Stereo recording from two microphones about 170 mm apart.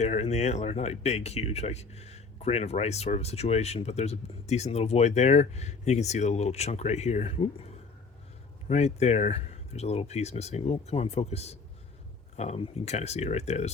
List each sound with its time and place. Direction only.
0.0 s speech: 40° left (ahead or behind)